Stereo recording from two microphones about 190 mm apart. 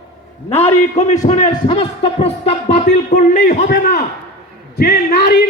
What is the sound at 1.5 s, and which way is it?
A man's voice, 30° left (ahead or behind).